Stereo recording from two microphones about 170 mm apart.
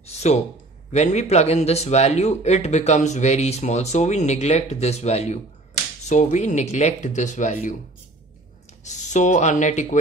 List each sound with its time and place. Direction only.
0.0 s a sound: 40° left (ahead or behind)
0.9 s speech: 40° left (ahead or behind)
8.8 s speech: 45° left (ahead or behind)